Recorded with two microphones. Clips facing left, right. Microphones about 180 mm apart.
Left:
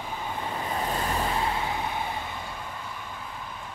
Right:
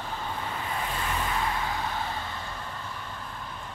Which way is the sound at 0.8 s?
40° left (ahead or behind).